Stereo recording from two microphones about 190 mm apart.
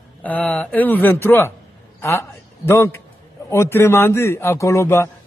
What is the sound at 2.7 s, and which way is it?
A man's voice, 15° left (ahead or behind).